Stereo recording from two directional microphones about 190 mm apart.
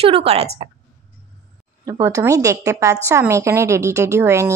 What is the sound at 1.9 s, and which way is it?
Speech, 15° right (ahead or behind).